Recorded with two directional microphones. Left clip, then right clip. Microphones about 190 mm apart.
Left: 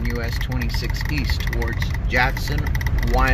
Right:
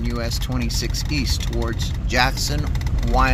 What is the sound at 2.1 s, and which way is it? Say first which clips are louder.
Speech: right 1 dB; 15° right (ahead or behind).